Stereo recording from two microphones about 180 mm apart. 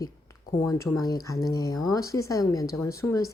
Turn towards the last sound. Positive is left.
turn(degrees=15)  # may be behind; listen again after turning